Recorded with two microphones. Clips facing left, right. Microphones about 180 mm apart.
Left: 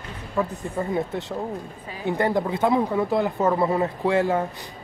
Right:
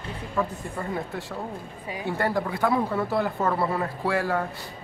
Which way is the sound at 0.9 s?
20° left (ahead or behind).